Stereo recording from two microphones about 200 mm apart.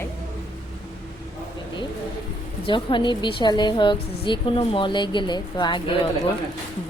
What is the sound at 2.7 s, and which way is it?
A woman's voice, 25° left (ahead or behind).